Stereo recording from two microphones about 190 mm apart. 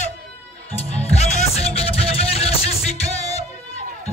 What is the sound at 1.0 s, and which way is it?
Music, 35° left (ahead or behind).